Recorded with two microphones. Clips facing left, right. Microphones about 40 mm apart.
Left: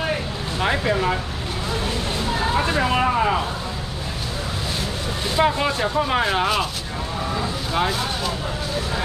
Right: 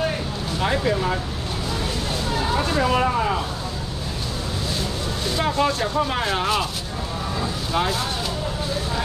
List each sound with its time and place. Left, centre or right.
0.6 s speech: centre
2.5 s speech: centre
5.3 s speech: centre
7.7 s speech: centre